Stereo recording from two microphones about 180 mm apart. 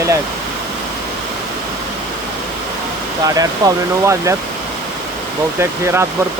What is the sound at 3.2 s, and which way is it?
Speech, 20° right (ahead or behind).